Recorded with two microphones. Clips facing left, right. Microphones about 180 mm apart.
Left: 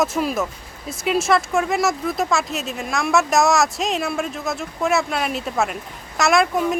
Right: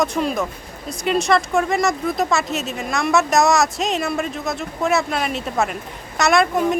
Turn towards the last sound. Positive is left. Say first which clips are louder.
# right 1 dB
turn(degrees=0)  # may be behind; listen again after turning